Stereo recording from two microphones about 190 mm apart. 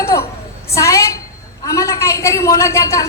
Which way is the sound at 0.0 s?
15° left (ahead or behind).